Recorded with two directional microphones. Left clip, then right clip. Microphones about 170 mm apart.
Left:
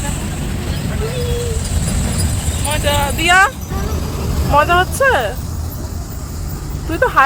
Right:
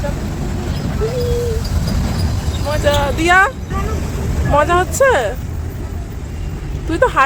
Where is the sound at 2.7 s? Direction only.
15° right (ahead or behind).